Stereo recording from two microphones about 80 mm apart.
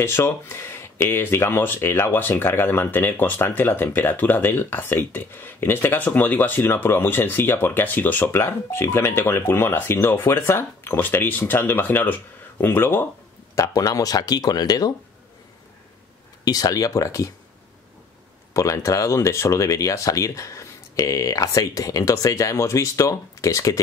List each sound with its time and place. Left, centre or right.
0.0 s speech: left
13.6 s speech: left
16.4 s speech: left
18.5 s speech: left